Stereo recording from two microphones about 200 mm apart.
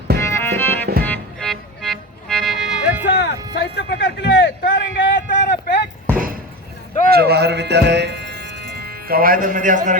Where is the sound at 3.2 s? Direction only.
55° left (ahead or behind).